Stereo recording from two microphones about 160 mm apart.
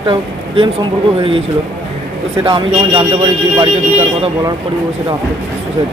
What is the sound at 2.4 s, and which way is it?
Speech, 30° right (ahead or behind).